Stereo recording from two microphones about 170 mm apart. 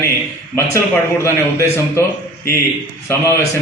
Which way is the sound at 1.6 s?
15° left (ahead or behind).